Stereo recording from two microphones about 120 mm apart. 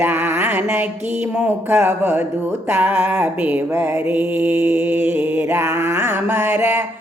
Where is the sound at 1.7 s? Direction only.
20° right (ahead or behind).